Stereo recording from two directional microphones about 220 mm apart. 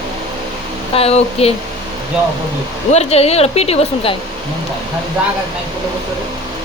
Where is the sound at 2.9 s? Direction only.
30° left (ahead or behind).